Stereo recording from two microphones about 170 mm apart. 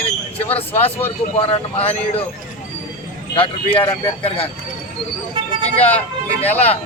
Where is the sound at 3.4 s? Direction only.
30° left (ahead or behind).